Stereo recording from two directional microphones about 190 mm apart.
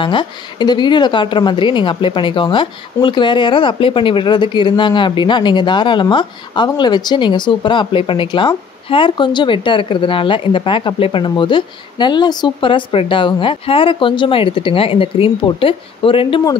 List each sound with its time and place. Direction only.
0.0 s speech: 25° left (ahead or behind)